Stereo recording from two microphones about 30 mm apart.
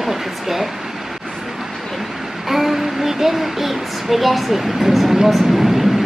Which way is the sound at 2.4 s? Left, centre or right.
Centre.